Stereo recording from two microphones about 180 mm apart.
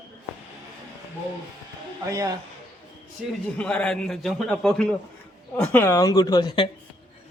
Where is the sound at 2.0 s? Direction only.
20° right (ahead or behind).